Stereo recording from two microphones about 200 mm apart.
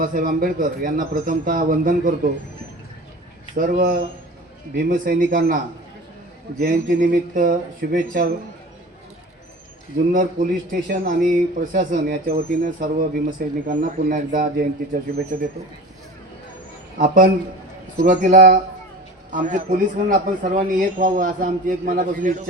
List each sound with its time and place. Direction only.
0.0 s a man's voice: 45° right (ahead or behind)
3.5 s a man's voice: 45° right (ahead or behind)
6.6 s a man's voice: 45° right (ahead or behind)
10.1 s a man's voice: 45° right (ahead or behind)
17.0 s a man's voice: 40° right (ahead or behind)